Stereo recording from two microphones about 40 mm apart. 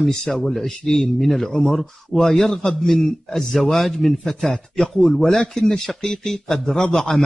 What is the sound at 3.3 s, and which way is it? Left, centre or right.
A man's voice, centre.